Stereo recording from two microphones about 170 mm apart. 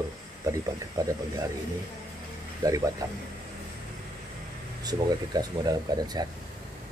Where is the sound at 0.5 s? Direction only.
20° right (ahead or behind).